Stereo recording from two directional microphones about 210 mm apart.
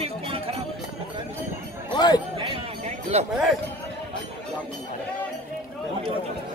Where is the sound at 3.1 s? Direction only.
30° right (ahead or behind).